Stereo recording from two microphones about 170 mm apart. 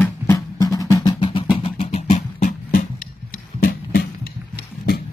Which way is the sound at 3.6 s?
60° left (ahead or behind).